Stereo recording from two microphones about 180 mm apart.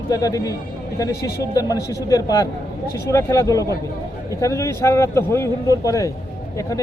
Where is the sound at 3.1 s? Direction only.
15° left (ahead or behind).